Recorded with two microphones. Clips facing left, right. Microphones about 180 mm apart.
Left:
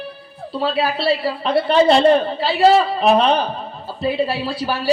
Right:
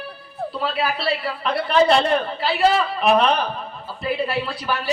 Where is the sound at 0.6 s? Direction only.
30° left (ahead or behind).